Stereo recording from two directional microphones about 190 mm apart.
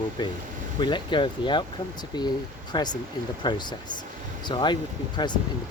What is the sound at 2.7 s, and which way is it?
Speech, 20° left (ahead or behind).